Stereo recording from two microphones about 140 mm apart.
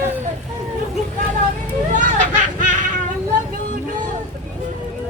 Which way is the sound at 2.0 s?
70° right (ahead or behind).